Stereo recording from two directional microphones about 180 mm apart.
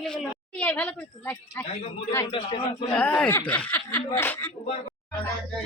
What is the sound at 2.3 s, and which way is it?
Speech, 30° left (ahead or behind).